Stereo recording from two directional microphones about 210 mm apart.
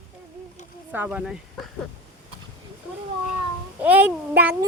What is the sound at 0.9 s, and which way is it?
Speech, 5° right (ahead or behind).